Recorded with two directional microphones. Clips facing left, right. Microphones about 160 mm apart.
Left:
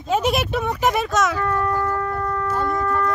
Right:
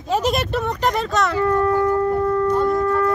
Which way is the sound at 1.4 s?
25° right (ahead or behind).